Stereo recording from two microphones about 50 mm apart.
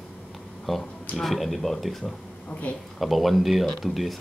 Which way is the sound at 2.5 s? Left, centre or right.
Left.